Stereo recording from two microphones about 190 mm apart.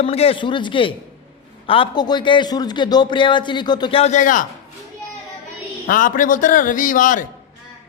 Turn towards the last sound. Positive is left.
turn(degrees=45)  # may be behind; listen again after turning